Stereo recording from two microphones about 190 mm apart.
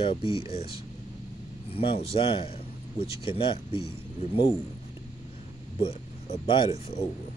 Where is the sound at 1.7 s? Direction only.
30° left (ahead or behind).